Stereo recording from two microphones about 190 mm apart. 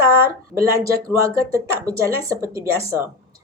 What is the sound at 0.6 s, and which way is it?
Speech, 15° right (ahead or behind).